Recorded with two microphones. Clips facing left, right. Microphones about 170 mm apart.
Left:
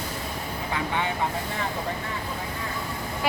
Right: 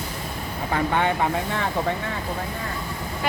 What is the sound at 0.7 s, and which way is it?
Speech, 60° right (ahead or behind).